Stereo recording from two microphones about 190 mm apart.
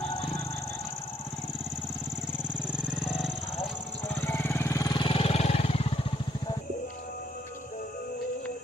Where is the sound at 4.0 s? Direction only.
10° left (ahead or behind); by 6.6 s 25° left (ahead or behind).